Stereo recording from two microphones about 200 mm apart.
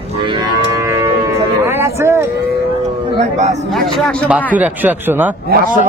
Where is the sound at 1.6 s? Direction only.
10° right (ahead or behind).